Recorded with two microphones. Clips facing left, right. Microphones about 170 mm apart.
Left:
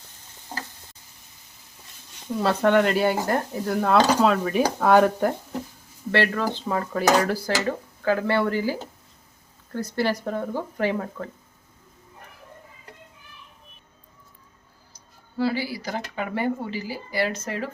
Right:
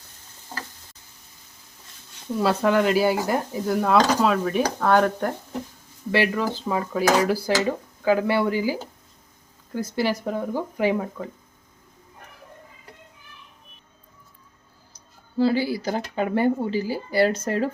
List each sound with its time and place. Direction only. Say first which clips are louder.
2.4 s speech: left 1 dB; 5° right (ahead or behind)
6.1 s speech: right 1 dB; 10° right (ahead or behind)
15.4 s speech: right 4 dB; 25° right (ahead or behind)